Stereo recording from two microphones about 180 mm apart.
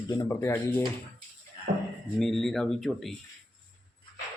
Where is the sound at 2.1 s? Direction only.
Centre (ahead or behind).